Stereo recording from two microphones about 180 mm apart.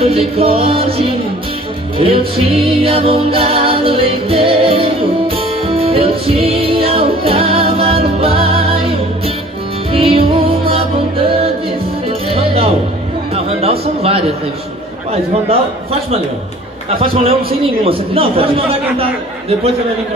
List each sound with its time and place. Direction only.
0.0 s speech: 35° right (ahead or behind)
2.0 s music: 30° right (ahead or behind)
9.9 s music: 30° right (ahead or behind)
13.5 s a sound: 35° right (ahead or behind)
17.0 s speech: 30° right (ahead or behind)